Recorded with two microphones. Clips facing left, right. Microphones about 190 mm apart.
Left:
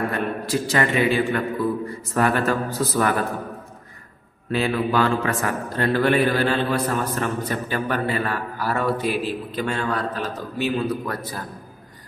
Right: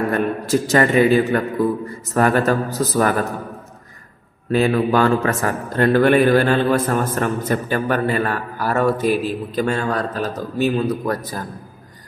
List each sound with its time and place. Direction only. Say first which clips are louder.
0.5 s a man's voice: right 6 dB; 45° right (ahead or behind)
4.5 s a man's voice: right 5 dB; 45° right (ahead or behind)